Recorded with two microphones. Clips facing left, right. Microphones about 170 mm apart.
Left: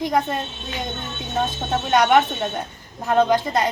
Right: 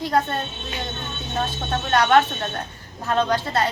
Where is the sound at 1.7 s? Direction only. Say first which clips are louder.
Left 1 dB; 15° left (ahead or behind).